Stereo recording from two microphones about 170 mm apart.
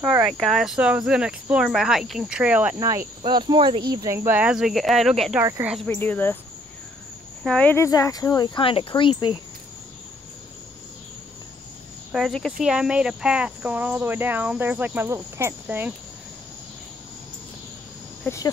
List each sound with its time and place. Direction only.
0.0 s speech: 10° right (ahead or behind)
2.8 s speech: 20° right (ahead or behind); by 5.4 s centre (ahead or behind)
5.4 s speech: 15° right (ahead or behind)
5.9 s speech: 10° left (ahead or behind)
7.4 s speech: 5° left (ahead or behind); by 9.4 s 30° left (ahead or behind)
12.1 s speech: centre (ahead or behind)